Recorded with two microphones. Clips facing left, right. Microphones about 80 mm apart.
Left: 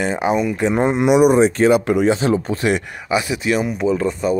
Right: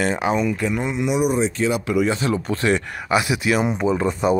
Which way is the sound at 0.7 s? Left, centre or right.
Left.